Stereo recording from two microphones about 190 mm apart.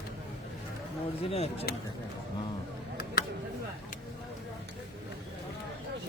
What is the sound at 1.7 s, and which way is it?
Speech, 55° left (ahead or behind).